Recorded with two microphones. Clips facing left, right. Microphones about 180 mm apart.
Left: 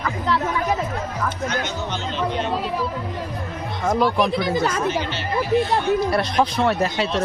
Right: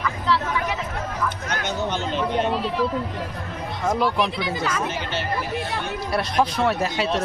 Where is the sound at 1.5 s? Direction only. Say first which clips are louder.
Even; 50° right (ahead or behind).